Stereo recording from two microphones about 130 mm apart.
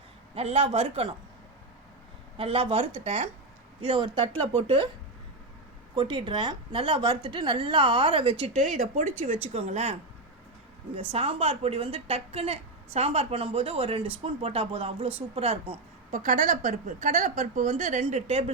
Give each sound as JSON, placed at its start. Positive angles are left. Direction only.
{"t": 0.3, "sound": "a woman's voice", "side_deg": -50}
{"t": 2.4, "sound": "a woman's voice", "side_deg": -45}
{"t": 3.8, "sound": "a woman's voice", "side_deg": -40}
{"t": 6.0, "sound": "a woman's voice", "side_deg": -40}
{"t": 11.1, "sound": "a woman's voice", "side_deg": -50}
{"t": 16.1, "sound": "a woman's voice", "side_deg": -75}